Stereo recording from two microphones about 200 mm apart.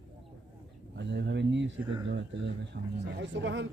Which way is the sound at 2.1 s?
60° right (ahead or behind).